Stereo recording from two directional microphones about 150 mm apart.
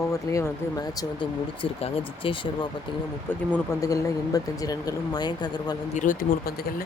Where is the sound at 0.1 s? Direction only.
20° left (ahead or behind).